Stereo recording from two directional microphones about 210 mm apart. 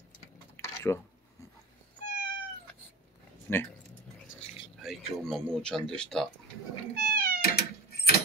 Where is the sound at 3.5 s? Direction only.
10° left (ahead or behind).